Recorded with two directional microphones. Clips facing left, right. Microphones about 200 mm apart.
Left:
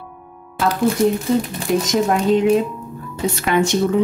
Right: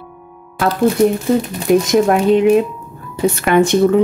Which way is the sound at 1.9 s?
60° right (ahead or behind).